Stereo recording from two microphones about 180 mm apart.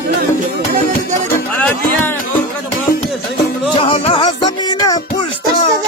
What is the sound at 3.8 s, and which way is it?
Music, 30° left (ahead or behind).